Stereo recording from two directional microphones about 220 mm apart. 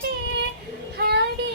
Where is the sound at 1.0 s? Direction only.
45° right (ahead or behind).